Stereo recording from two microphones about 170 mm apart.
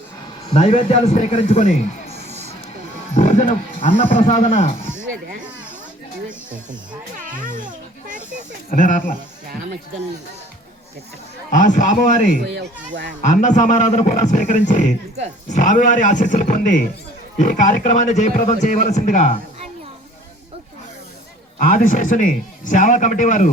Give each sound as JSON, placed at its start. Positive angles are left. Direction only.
{"t": 0.5, "sound": "speech", "side_deg": 40}
{"t": 3.2, "sound": "a man's voice", "side_deg": 45}
{"t": 7.3, "sound": "children playing", "side_deg": -50}
{"t": 8.7, "sound": "a man's voice", "side_deg": 50}
{"t": 11.5, "sound": "a man's voice", "side_deg": 45}
{"t": 12.5, "sound": "speech", "side_deg": -90}
{"t": 13.2, "sound": "a man's voice", "side_deg": 45}
{"t": 21.6, "sound": "a man's voice", "side_deg": 50}